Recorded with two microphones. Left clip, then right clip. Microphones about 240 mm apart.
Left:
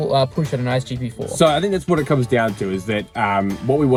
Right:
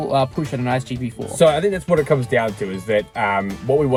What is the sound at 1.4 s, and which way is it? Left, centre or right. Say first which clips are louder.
Speech: right 1 dB; centre.